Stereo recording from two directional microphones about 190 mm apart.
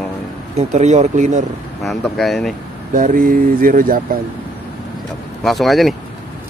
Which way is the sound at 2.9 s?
45° right (ahead or behind).